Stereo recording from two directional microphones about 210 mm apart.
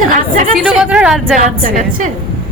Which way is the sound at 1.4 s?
35° right (ahead or behind).